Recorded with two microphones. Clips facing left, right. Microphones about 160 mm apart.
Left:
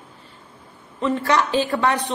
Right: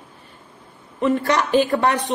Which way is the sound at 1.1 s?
15° right (ahead or behind).